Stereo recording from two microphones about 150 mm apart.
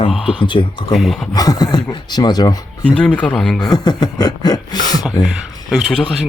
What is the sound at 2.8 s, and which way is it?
Speech, 10° left (ahead or behind).